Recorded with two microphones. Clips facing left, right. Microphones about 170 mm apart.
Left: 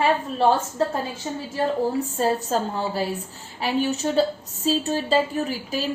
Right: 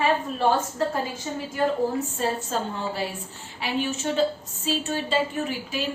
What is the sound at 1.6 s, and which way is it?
A woman's voice, 35° left (ahead or behind).